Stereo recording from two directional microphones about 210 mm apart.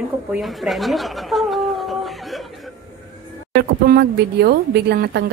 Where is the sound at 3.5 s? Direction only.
50° right (ahead or behind).